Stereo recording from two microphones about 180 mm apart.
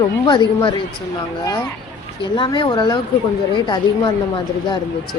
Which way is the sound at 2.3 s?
25° left (ahead or behind).